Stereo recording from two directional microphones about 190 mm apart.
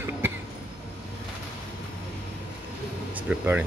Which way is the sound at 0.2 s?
10° right (ahead or behind).